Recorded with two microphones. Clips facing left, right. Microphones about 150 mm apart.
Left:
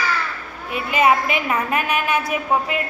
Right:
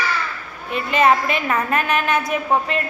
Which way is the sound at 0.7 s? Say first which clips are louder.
Right 1 dB; 10° left (ahead or behind).